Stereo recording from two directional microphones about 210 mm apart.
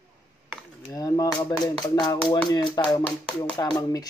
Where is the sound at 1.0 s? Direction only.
15° left (ahead or behind).